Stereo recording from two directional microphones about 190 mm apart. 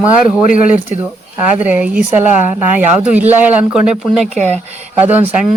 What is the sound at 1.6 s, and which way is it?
Speech, 5° right (ahead or behind).